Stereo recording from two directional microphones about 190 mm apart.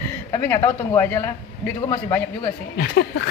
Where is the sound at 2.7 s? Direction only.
65° left (ahead or behind).